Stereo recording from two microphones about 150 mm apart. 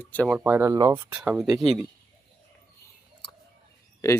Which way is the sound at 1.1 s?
5° right (ahead or behind).